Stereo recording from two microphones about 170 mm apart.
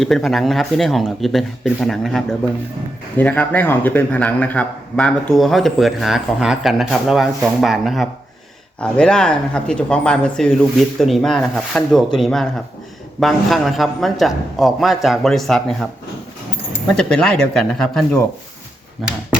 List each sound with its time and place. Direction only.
0.0 s a man's voice: centre (ahead or behind)
16.9 s a man's voice: 5° left (ahead or behind)